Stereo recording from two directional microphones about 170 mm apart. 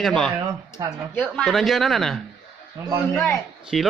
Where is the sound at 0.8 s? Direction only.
25° right (ahead or behind).